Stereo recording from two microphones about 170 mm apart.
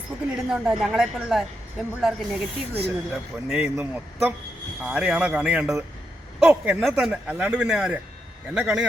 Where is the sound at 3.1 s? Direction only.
5° right (ahead or behind).